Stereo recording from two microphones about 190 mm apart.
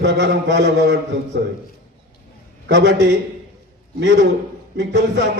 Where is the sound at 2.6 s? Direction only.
65° right (ahead or behind).